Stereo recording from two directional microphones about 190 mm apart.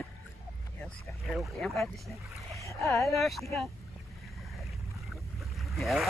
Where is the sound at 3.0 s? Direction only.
Centre (ahead or behind).